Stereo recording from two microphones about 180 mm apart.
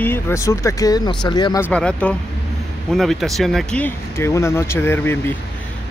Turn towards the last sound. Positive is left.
turn(degrees=10)  # may be behind; listen again after turning